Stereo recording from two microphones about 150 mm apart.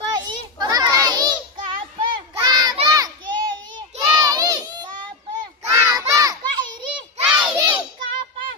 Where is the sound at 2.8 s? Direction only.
25° right (ahead or behind).